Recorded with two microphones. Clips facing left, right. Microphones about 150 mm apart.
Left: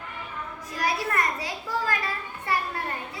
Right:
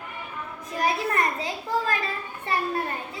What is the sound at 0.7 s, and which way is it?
A child's voice, 25° right (ahead or behind).